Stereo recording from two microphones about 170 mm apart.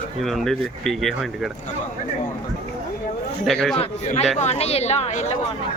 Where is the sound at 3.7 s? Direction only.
40° left (ahead or behind).